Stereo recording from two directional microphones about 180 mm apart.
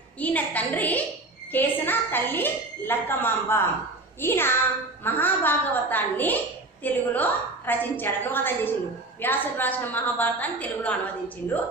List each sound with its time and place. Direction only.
0.2 s a woman's voice: 10° left (ahead or behind)